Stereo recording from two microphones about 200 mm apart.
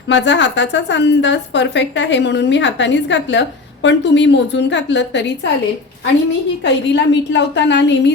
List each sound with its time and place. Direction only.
0.1 s a woman's voice: 60° left (ahead or behind)
6.7 s a woman's voice: 60° left (ahead or behind)